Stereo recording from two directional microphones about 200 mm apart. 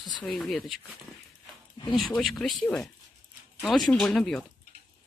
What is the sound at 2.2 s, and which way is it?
Speech, centre (ahead or behind).